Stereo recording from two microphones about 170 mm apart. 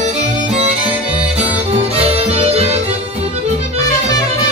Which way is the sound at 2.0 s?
35° right (ahead or behind).